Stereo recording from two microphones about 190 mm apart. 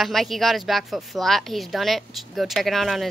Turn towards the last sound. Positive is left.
turn(degrees=0)  # may be behind; listen again after turning